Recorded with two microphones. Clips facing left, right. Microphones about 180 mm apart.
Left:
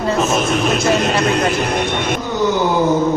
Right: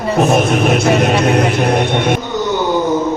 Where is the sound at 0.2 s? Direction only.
60° right (ahead or behind).